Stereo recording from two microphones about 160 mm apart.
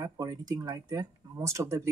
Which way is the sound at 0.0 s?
20° right (ahead or behind).